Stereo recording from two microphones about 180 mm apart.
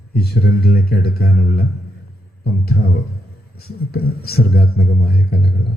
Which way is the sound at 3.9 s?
60° left (ahead or behind).